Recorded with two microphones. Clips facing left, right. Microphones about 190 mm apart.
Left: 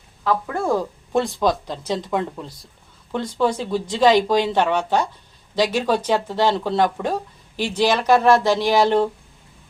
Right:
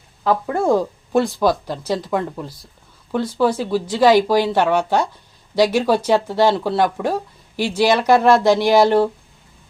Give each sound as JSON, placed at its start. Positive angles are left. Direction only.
{"t": 0.3, "sound": "a woman's voice", "side_deg": -25}
{"t": 1.1, "sound": "speech", "side_deg": -5}